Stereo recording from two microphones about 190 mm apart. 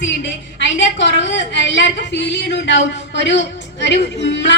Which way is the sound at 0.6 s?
70° left (ahead or behind).